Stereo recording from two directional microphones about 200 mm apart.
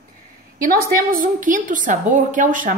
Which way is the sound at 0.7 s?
45° right (ahead or behind).